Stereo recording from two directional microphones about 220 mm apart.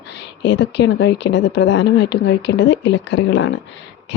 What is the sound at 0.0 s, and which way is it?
Speech, 50° left (ahead or behind).